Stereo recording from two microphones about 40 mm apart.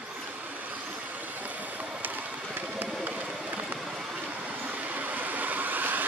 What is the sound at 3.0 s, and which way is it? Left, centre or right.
Run, right.